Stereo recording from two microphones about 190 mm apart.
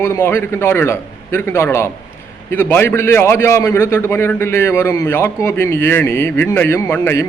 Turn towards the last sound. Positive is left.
turn(degrees=15)  # may be behind; listen again after turning